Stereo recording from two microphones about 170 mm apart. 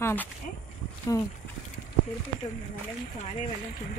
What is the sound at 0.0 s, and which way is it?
Speech, 10° left (ahead or behind).